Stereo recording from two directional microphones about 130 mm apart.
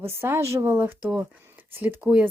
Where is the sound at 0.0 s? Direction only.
20° right (ahead or behind).